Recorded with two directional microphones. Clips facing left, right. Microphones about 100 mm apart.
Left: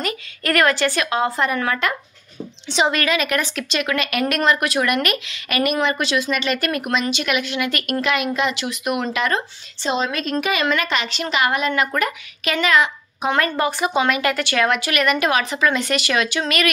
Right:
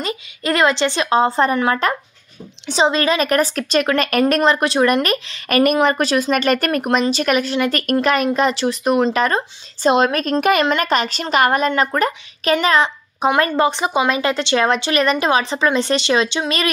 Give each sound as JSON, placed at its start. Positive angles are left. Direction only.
{"t": 0.0, "sound": "speech", "side_deg": -20}
{"t": 4.4, "sound": "speech", "side_deg": -30}
{"t": 9.8, "sound": "a woman's voice", "side_deg": -55}